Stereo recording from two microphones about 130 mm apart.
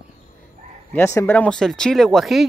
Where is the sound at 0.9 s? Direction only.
20° left (ahead or behind).